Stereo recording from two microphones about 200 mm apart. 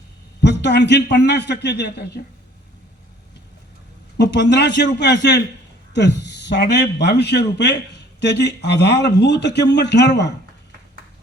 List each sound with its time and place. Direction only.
0.4 s a man's voice: 60° left (ahead or behind)
4.2 s a man's voice: 60° left (ahead or behind)